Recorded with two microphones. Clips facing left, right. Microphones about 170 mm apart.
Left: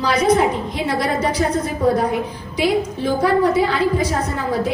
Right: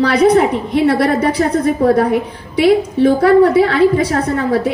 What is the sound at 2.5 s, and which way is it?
A woman's voice, 60° right (ahead or behind).